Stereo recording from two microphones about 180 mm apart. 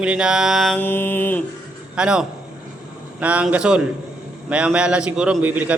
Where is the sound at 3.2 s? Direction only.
5° right (ahead or behind).